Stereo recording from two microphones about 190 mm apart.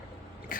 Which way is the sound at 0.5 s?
45° left (ahead or behind).